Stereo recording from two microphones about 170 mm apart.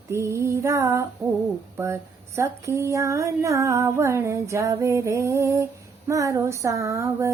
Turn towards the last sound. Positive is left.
turn(degrees=-15)  # may be behind; listen again after turning